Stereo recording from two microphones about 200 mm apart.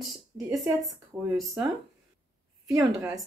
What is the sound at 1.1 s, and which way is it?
Speech, 15° right (ahead or behind).